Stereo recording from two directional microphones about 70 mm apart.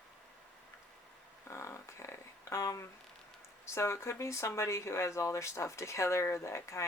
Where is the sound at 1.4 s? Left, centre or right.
Left.